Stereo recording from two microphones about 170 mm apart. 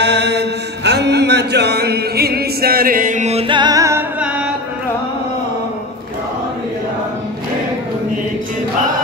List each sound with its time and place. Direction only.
0.0 s mantra: 90° right; by 4.0 s 20° right (ahead or behind)